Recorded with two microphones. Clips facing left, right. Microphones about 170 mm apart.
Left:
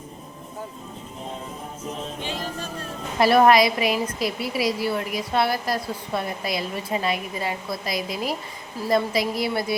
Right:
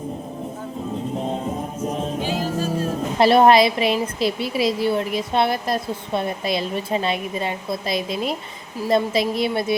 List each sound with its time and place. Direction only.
2.2 s music: 5° right (ahead or behind)
3.2 s a woman's voice: 25° right (ahead or behind)